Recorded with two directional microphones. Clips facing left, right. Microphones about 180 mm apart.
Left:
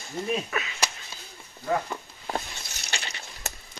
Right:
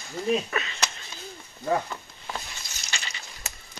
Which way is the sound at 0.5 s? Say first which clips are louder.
Even; 5° left (ahead or behind).